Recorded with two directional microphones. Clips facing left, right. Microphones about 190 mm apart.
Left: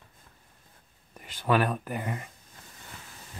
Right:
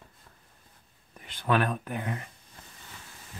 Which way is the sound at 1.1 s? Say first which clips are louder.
Left 1 dB; 5° left (ahead or behind).